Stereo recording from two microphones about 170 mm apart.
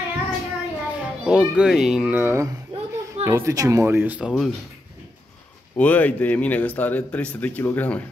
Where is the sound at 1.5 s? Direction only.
5° right (ahead or behind).